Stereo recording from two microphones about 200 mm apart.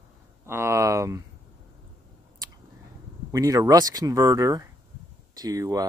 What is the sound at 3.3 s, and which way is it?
Speech, 15° right (ahead or behind).